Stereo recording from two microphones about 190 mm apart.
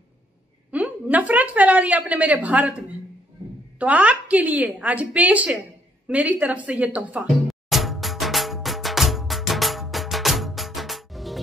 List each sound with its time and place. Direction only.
0.7 s a woman's voice: 10° right (ahead or behind)
3.8 s a woman's voice: 5° right (ahead or behind)
7.7 s music: centre (ahead or behind)